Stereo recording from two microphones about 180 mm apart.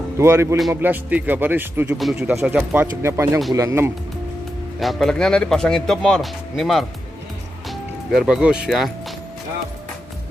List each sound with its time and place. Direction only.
0.2 s speech: 15° right (ahead or behind)
4.7 s speech: centre (ahead or behind)